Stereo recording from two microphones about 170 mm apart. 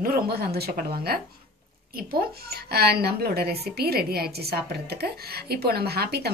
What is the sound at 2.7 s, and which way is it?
A woman's voice, 70° right (ahead or behind).